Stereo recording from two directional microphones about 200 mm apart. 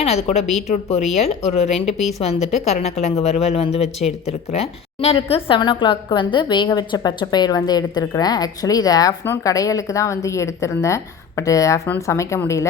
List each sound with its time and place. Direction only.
0.0 s a woman's voice: 30° left (ahead or behind); by 12.6 s 15° left (ahead or behind)